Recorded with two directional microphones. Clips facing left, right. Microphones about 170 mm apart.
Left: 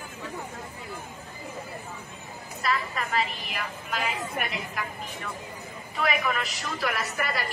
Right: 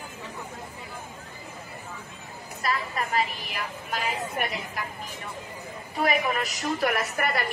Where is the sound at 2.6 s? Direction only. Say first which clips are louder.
Even; 40° right (ahead or behind).